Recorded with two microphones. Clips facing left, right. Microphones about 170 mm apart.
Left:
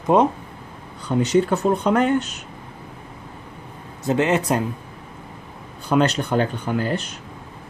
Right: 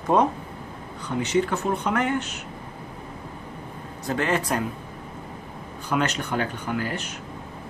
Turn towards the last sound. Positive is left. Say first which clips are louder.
# left 5 dB
turn(degrees=30)  # may be behind; listen again after turning